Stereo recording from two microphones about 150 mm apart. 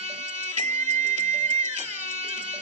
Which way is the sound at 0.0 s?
50° right (ahead or behind).